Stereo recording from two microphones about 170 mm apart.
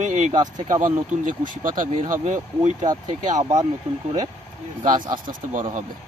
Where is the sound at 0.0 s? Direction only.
45° right (ahead or behind).